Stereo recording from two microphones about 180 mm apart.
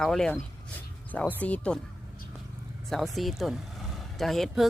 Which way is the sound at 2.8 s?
Centre (ahead or behind).